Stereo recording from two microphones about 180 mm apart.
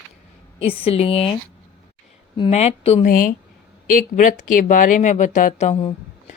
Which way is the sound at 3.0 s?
50° left (ahead or behind).